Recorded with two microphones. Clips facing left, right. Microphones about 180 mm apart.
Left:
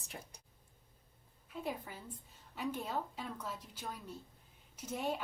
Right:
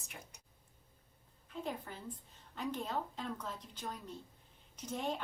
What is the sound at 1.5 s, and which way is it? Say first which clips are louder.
A woman's voice: even; 10° left (ahead or behind).